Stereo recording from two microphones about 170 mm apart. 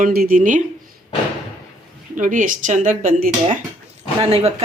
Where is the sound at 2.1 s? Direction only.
50° right (ahead or behind).